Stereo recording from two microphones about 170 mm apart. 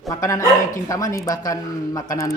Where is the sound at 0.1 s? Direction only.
20° left (ahead or behind).